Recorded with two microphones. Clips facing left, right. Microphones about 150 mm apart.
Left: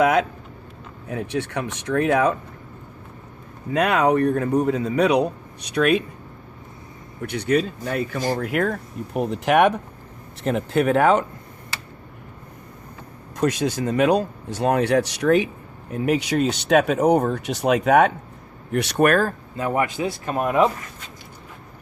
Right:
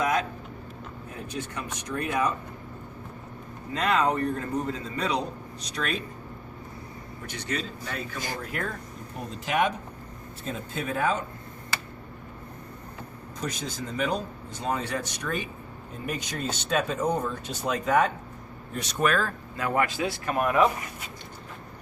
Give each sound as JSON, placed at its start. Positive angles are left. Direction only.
{"t": 0.0, "sound": "a sound", "side_deg": 80}
{"t": 1.1, "sound": "a man's voice", "side_deg": 70}
{"t": 3.7, "sound": "a man's voice", "side_deg": 65}
{"t": 7.3, "sound": "speech", "side_deg": 60}
{"t": 8.4, "sound": "a man's voice", "side_deg": 70}
{"t": 13.3, "sound": "a man's voice", "side_deg": 70}
{"t": 19.5, "sound": "a man's voice", "side_deg": 20}